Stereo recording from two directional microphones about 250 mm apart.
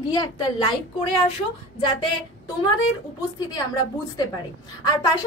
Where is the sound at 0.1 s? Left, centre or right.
Centre.